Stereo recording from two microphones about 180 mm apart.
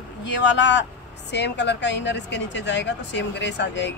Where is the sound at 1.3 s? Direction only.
70° left (ahead or behind).